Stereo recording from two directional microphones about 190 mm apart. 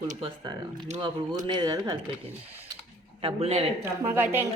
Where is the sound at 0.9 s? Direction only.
35° right (ahead or behind).